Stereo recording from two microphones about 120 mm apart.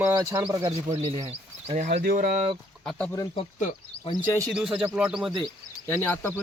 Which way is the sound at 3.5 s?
85° left.